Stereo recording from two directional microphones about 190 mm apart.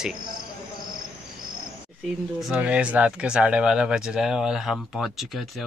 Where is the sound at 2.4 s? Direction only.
5° right (ahead or behind).